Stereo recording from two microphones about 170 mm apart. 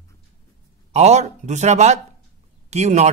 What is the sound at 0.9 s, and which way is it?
Speech, 40° right (ahead or behind).